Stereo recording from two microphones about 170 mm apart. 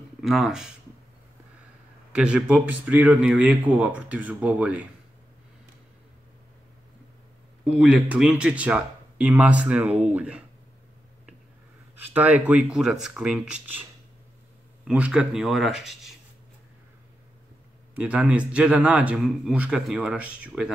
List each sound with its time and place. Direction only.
0.2 s speech: 5° right (ahead or behind)
2.1 s speech: 5° right (ahead or behind)
7.6 s speech: 5° right (ahead or behind)
11.9 s speech: 10° right (ahead or behind)
14.9 s speech: 5° right (ahead or behind)
17.9 s speech: 10° right (ahead or behind)